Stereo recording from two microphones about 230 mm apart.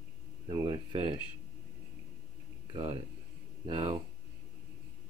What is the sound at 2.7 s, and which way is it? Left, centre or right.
Speech, right.